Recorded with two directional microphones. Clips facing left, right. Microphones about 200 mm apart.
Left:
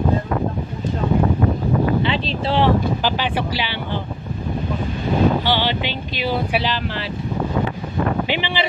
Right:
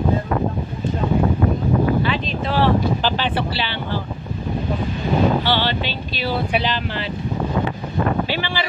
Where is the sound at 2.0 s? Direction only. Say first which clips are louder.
Left 1 dB; 30° left (ahead or behind).